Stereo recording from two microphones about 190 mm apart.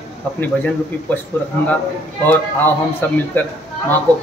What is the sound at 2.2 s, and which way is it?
A man's voice, 10° left (ahead or behind).